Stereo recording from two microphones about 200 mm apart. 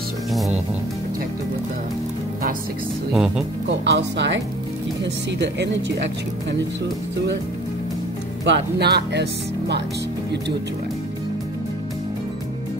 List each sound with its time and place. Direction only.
0.3 s music: centre (ahead or behind)
3.1 s speech: 5° right (ahead or behind)
3.8 s speech: 60° right (ahead or behind)
8.5 s speech: 55° right (ahead or behind)